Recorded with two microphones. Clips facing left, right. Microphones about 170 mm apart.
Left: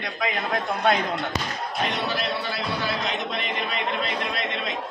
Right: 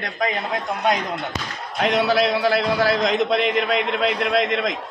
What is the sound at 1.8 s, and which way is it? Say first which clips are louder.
A man's voice: right 10 dB; 90° right.